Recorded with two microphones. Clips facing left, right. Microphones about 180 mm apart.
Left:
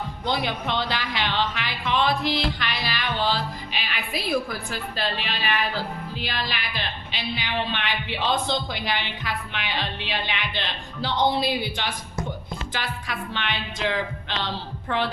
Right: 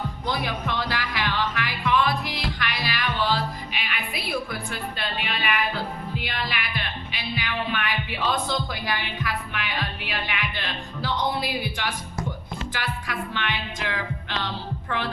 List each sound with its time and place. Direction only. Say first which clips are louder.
0.3 s speech: left 2 dB; 25° left (ahead or behind)
3.7 s music: left 1 dB; 30° left (ahead or behind)
4.9 s speech: left 4 dB; 35° left (ahead or behind)